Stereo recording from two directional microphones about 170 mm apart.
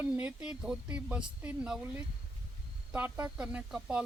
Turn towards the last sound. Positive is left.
turn(degrees=-5)  # may be behind; listen again after turning